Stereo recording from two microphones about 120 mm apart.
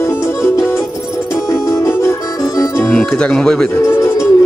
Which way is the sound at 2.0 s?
25° left (ahead or behind).